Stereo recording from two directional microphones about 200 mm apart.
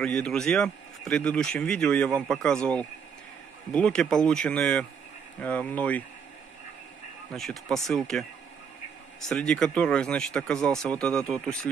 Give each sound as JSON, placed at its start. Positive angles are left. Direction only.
{"t": 0.0, "sound": "speech", "side_deg": 5}
{"t": 7.7, "sound": "speech", "side_deg": 0}
{"t": 9.3, "sound": "speech", "side_deg": 5}